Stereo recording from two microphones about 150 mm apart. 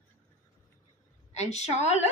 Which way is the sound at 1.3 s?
50° left (ahead or behind).